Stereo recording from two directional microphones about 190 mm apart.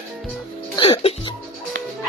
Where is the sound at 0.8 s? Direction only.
30° left (ahead or behind).